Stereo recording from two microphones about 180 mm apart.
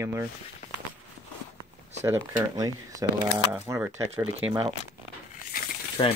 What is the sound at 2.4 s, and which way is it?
Speech, 20° right (ahead or behind).